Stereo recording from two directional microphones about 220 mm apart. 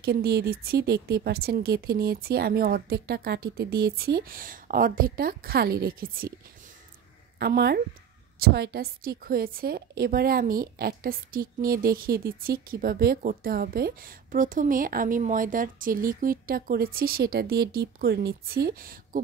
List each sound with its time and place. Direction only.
0.0 s a woman's voice: 45° right (ahead or behind)
7.3 s a woman's voice: 45° right (ahead or behind)